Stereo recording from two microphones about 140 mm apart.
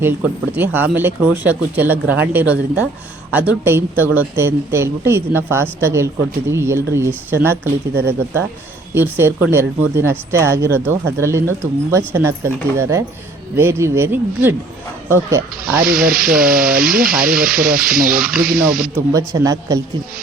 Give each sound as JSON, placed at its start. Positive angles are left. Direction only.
{"t": 0.5, "sound": "speech", "side_deg": -15}
{"t": 9.0, "sound": "speech", "side_deg": -15}
{"t": 15.8, "sound": "speech", "side_deg": -90}
{"t": 19.1, "sound": "speech", "side_deg": -25}